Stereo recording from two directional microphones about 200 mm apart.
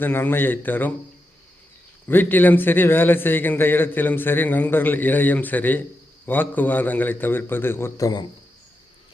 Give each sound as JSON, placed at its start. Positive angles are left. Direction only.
{"t": 0.0, "sound": "a man's voice", "side_deg": 10}
{"t": 2.0, "sound": "a man's voice", "side_deg": 10}